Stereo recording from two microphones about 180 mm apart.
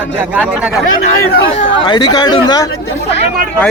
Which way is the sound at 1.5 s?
25° left (ahead or behind).